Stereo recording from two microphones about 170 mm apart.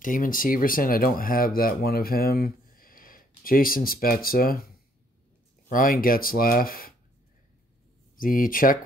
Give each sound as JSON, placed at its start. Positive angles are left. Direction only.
{"t": 0.0, "sound": "speech", "side_deg": 50}
{"t": 8.2, "sound": "speech", "side_deg": 55}